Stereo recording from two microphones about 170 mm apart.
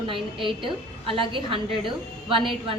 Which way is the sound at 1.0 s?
30° right (ahead or behind).